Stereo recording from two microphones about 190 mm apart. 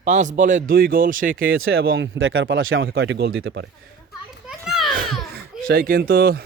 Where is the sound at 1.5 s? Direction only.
90° right.